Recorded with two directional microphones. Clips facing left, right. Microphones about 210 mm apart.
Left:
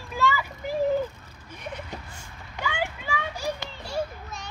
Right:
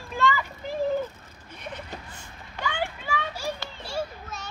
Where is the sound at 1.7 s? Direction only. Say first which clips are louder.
Left 1 dB; 10° left (ahead or behind).